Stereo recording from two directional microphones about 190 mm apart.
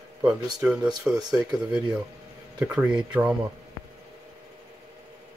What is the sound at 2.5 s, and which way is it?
Speech, 5° right (ahead or behind).